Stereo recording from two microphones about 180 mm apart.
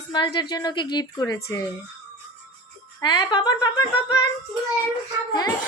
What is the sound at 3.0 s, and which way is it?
A woman's voice, 25° left (ahead or behind).